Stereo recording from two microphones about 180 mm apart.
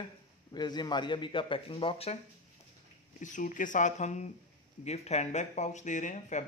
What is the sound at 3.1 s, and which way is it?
Speech, 45° left (ahead or behind).